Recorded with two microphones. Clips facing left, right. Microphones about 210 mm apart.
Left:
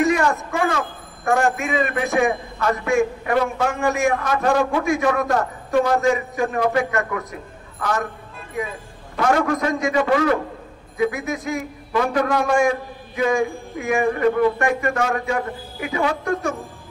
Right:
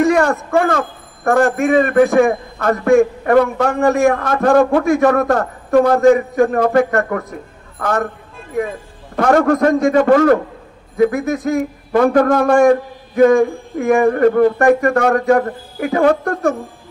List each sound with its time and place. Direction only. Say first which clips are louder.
0.0 s a man's voice: right 5 dB; 55° right (ahead or behind)
3.7 s a man's voice: right 10 dB; 60° right (ahead or behind)
9.1 s speech: right 6 dB; 55° right (ahead or behind)